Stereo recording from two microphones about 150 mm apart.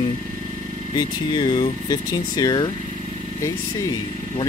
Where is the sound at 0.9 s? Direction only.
30° left (ahead or behind).